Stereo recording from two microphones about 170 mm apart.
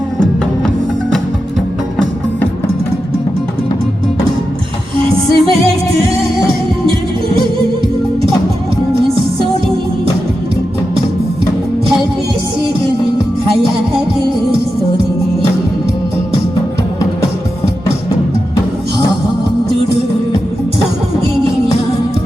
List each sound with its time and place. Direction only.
5.0 s music: 30° right (ahead or behind)